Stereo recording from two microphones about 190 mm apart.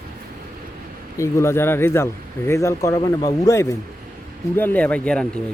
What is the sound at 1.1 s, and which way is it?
Speech, 15° left (ahead or behind).